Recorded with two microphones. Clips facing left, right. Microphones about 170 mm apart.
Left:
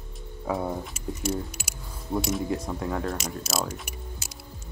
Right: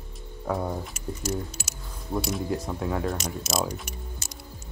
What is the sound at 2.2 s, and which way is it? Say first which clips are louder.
Speech: left 1 dB; centre (ahead or behind).